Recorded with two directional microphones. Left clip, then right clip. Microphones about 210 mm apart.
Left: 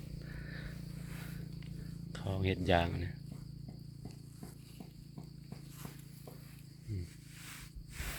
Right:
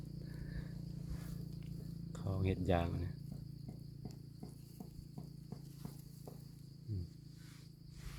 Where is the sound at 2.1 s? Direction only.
5° right (ahead or behind).